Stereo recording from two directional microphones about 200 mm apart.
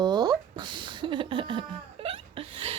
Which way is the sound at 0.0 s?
20° right (ahead or behind).